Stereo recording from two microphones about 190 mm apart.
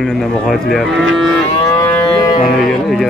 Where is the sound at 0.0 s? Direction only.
Centre (ahead or behind).